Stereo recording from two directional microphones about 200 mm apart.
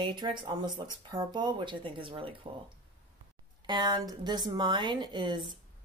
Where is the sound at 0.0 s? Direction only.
25° right (ahead or behind).